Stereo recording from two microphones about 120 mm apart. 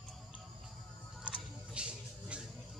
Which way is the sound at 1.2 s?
10° right (ahead or behind).